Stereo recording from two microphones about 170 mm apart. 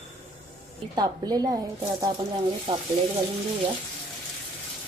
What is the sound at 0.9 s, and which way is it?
A woman's voice, 25° right (ahead or behind).